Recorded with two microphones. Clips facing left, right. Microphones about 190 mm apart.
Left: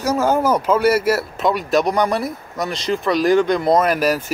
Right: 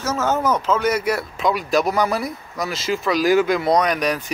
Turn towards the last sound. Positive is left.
turn(degrees=5)  # may be behind; listen again after turning